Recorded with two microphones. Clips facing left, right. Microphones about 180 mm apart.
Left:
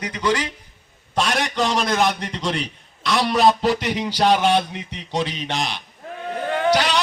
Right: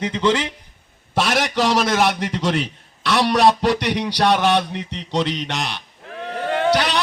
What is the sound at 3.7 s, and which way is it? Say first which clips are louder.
A man's voice: right 2 dB; 70° right (ahead or behind).